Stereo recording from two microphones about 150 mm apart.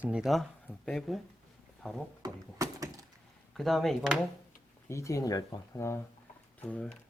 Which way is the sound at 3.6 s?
Centre (ahead or behind).